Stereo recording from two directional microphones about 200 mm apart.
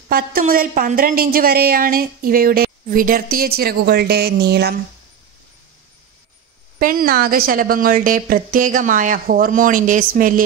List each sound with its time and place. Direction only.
0.1 s a woman's voice: 45° right (ahead or behind)
6.8 s a woman's voice: 45° right (ahead or behind)